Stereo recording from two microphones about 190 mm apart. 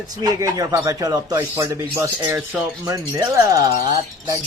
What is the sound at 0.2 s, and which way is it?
Speech, 20° right (ahead or behind).